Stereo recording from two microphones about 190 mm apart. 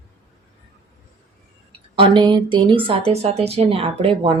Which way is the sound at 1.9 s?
25° right (ahead or behind).